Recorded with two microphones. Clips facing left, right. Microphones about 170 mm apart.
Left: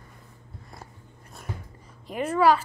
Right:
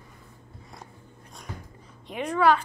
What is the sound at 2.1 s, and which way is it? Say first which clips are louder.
Speech: left 1 dB; 5° left (ahead or behind).